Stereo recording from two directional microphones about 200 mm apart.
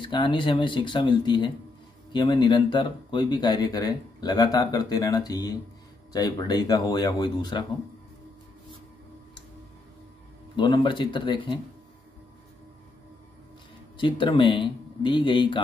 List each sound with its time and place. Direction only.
0.0 s speech: 25° left (ahead or behind)
10.5 s speech: 25° left (ahead or behind)
13.9 s speech: 25° left (ahead or behind)